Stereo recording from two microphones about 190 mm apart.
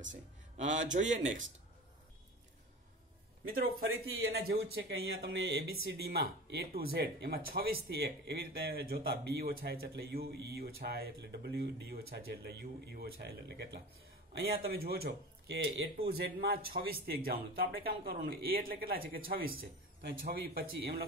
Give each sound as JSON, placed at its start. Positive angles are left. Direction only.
{"t": 0.0, "sound": "speech", "side_deg": -40}
{"t": 4.2, "sound": "speech", "side_deg": -60}